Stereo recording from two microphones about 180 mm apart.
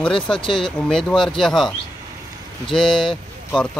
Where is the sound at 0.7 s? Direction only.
5° left (ahead or behind).